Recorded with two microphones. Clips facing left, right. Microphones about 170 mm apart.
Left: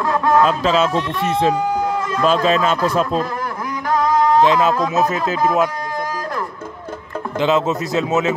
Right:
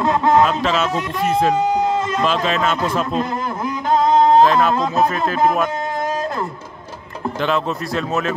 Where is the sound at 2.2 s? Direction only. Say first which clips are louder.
Left 6 dB; 40° left (ahead or behind).